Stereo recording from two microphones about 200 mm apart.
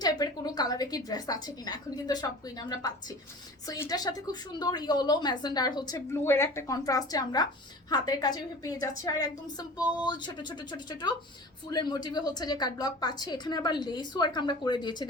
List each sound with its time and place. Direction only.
0.0 s a woman's voice: 20° left (ahead or behind)